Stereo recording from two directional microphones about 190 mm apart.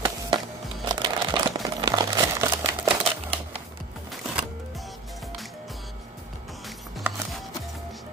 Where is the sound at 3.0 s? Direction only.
30° right (ahead or behind).